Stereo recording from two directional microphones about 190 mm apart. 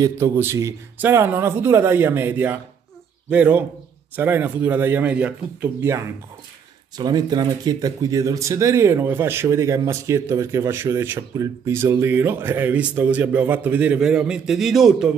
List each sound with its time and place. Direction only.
0.0 s speech: 15° right (ahead or behind)